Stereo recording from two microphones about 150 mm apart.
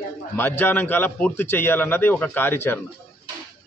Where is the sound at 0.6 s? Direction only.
15° left (ahead or behind).